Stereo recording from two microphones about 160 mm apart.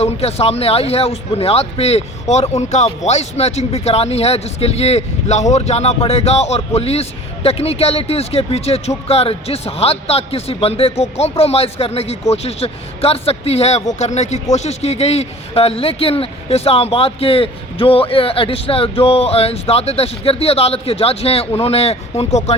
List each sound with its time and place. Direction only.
0.0 s speech: 40° left (ahead or behind)